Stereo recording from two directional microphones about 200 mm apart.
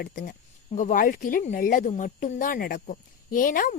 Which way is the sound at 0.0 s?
45° left (ahead or behind).